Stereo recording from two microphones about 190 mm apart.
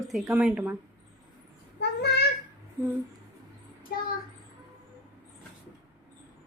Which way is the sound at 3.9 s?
50° left (ahead or behind).